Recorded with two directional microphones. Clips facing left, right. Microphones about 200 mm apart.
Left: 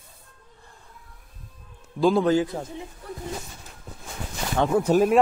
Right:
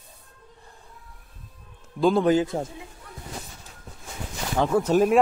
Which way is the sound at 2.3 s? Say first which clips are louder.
Right 1 dB; 25° right (ahead or behind).